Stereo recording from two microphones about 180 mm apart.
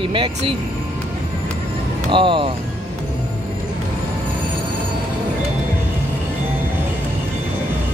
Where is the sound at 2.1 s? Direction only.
30° right (ahead or behind).